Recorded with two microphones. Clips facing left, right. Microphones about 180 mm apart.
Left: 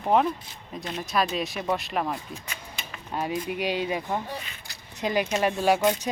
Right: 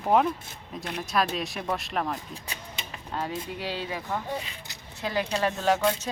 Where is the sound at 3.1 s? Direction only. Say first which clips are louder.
Left 4 dB; 15° left (ahead or behind).